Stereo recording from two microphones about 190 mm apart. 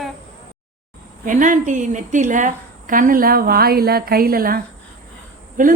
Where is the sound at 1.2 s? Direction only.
45° right (ahead or behind).